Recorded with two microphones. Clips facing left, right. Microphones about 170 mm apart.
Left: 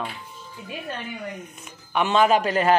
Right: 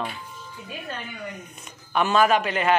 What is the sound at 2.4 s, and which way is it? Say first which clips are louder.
Speech: left 3 dB; 40° left (ahead or behind).